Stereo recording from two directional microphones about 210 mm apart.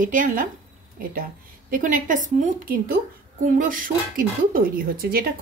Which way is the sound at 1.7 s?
40° right (ahead or behind).